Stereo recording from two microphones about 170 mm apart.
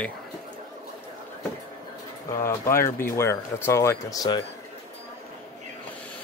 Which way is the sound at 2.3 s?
15° left (ahead or behind).